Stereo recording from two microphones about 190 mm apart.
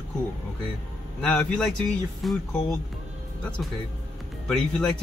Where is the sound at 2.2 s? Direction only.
Centre (ahead or behind).